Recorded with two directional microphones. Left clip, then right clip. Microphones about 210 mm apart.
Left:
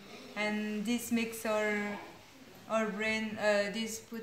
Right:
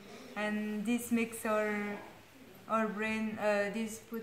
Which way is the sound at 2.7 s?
Centre (ahead or behind).